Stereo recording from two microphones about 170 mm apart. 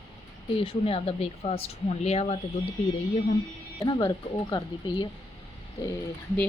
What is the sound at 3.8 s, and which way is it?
Speech, 25° left (ahead or behind).